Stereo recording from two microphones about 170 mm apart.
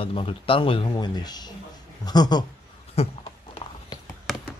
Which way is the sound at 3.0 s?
35° left (ahead or behind).